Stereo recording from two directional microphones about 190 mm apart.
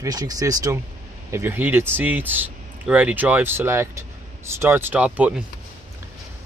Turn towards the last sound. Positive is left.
turn(degrees=-5)  # may be behind; listen again after turning